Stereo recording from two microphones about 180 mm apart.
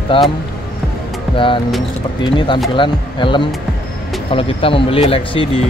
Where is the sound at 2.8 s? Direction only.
25° left (ahead or behind).